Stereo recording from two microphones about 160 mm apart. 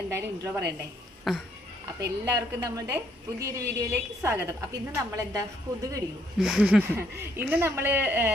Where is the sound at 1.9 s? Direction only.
20° right (ahead or behind).